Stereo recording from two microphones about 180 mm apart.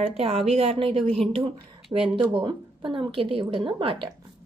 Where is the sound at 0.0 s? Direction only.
35° right (ahead or behind).